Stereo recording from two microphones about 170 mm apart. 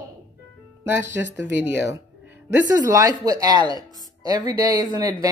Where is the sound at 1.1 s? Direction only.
15° right (ahead or behind).